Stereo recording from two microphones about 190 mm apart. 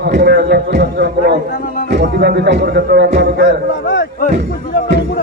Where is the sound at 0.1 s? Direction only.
60° right (ahead or behind).